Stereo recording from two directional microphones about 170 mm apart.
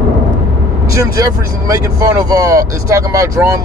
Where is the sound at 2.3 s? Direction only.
20° right (ahead or behind).